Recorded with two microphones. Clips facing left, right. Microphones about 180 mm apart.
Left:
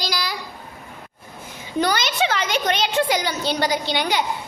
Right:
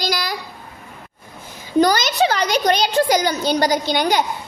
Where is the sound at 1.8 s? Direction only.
40° right (ahead or behind).